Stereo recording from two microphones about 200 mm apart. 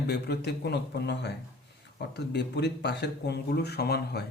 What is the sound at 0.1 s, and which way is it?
Speech, 55° left (ahead or behind).